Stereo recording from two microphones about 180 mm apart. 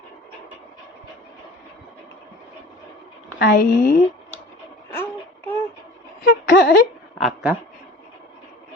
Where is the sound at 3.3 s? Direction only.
60° left (ahead or behind).